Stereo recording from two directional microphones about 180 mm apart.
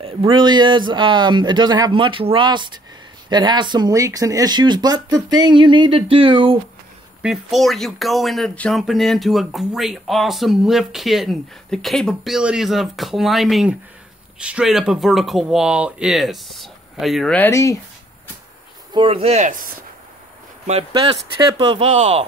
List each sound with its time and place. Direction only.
0.0 s speech: 30° right (ahead or behind)
7.2 s speech: centre (ahead or behind); by 17.7 s 15° left (ahead or behind)
18.9 s speech: 30° right (ahead or behind)
20.6 s speech: 35° right (ahead or behind)